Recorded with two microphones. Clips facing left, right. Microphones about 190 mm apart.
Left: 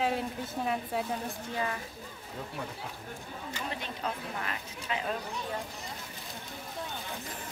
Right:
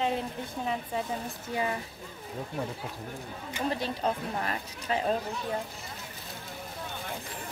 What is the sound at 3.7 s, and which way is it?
Speech, 35° right (ahead or behind).